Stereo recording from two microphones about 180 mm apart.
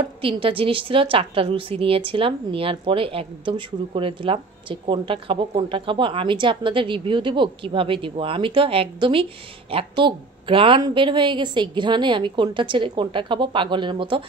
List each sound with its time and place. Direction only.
0.2 s a woman's voice: 30° right (ahead or behind)